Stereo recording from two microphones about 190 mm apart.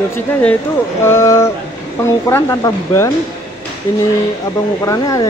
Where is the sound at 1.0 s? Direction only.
15° left (ahead or behind).